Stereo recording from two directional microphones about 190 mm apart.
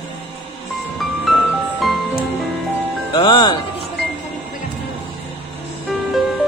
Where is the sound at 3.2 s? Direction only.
25° left (ahead or behind).